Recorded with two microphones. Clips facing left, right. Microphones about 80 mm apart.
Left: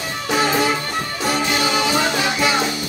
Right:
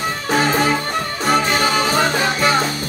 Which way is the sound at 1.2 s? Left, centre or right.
Right.